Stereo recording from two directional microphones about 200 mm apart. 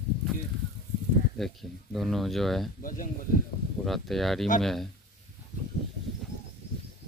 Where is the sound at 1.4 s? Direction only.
Centre (ahead or behind).